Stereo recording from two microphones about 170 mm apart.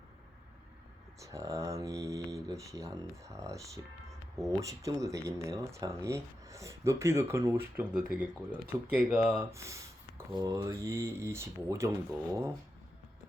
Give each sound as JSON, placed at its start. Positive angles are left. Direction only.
{"t": 1.2, "sound": "speech", "side_deg": -20}
{"t": 9.5, "sound": "speech", "side_deg": -15}